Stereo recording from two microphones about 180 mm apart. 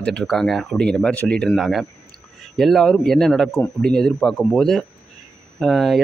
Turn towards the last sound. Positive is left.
turn(degrees=0)  # may be behind; listen again after turning